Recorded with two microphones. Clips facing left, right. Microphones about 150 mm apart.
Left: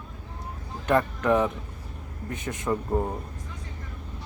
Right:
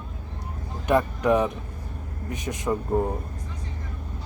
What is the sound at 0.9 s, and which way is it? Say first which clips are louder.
Speech: right 2 dB; 15° right (ahead or behind).